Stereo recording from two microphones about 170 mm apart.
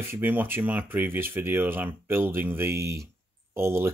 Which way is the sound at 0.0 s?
10° right (ahead or behind).